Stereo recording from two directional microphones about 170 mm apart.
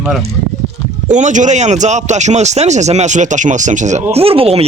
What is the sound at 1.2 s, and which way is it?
Speech, 45° right (ahead or behind).